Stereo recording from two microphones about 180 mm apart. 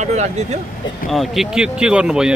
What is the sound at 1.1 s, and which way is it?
Speech, centre (ahead or behind).